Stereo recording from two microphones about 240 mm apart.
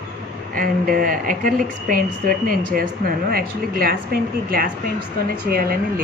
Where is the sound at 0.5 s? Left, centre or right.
Right.